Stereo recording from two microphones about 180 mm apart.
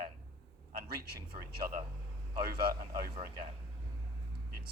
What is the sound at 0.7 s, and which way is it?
Speech, 60° right (ahead or behind).